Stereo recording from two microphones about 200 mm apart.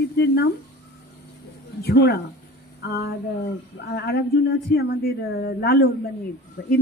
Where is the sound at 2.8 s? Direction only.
55° left (ahead or behind).